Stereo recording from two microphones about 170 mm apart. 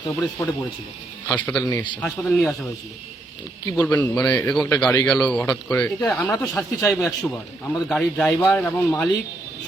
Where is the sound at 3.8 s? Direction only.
10° left (ahead or behind).